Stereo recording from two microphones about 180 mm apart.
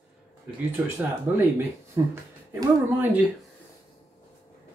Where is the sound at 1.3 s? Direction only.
10° right (ahead or behind).